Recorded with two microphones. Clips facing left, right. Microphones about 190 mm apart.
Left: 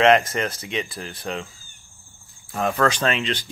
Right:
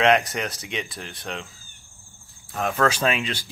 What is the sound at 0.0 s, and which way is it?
Speech, centre (ahead or behind).